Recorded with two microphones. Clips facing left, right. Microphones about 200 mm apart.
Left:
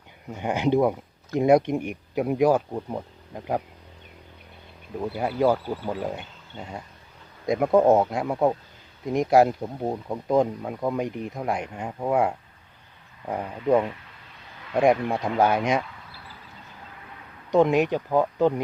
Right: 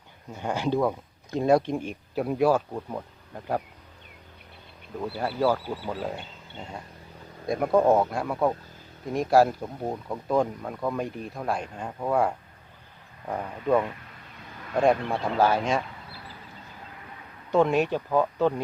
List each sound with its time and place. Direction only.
0.3 s speech: 20° left (ahead or behind)
4.9 s speech: 15° left (ahead or behind)
7.4 s speech: 20° left (ahead or behind)
17.5 s speech: 15° left (ahead or behind)